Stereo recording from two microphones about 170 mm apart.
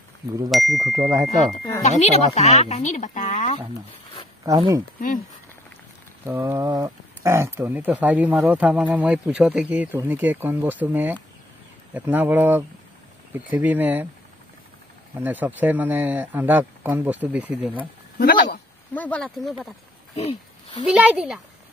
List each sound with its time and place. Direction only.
0.5 s speech: centre (ahead or behind)
0.9 s speech: 20° right (ahead or behind)
1.8 s speech: 45° left (ahead or behind)
4.5 s speech: 25° right (ahead or behind)
6.2 s speech: 15° right (ahead or behind)
15.1 s speech: 10° right (ahead or behind)
18.1 s speech: 55° left (ahead or behind)
18.9 s speech: 5° left (ahead or behind)
20.2 s speech: 35° left (ahead or behind)
20.8 s speech: 5° right (ahead or behind)